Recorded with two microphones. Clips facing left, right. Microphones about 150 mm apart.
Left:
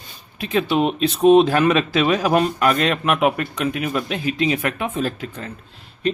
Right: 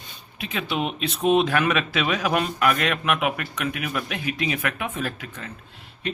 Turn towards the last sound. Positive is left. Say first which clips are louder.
# left 6 dB
turn(degrees=30)  # may be behind; listen again after turning